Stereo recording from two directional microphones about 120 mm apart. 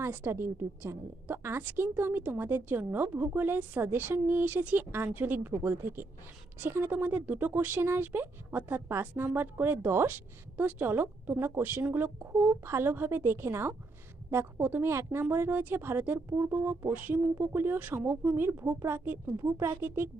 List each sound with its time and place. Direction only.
0.0 s speech: 20° right (ahead or behind)